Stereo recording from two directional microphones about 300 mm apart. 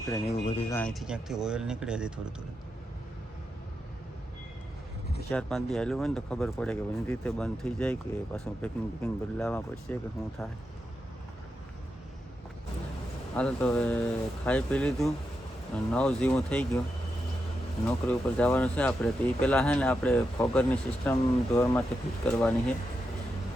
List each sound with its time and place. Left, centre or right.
0.3 s speech: centre
0.8 s speech: centre
5.3 s speech: centre
13.3 s speech: centre
17.8 s speech: centre